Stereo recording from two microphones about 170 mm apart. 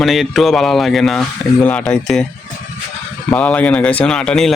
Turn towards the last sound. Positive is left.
turn(degrees=5)  # may be behind; listen again after turning